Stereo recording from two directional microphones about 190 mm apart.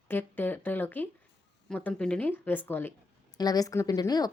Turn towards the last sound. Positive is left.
turn(degrees=20)  # may be behind; listen again after turning